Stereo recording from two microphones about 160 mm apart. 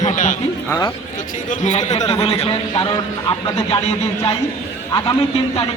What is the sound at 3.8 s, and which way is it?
Speech, 40° left (ahead or behind).